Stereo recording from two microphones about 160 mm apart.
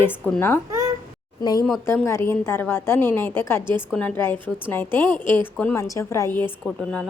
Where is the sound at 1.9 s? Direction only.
15° left (ahead or behind).